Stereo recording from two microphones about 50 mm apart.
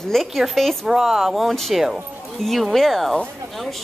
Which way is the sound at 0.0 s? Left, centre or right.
Centre.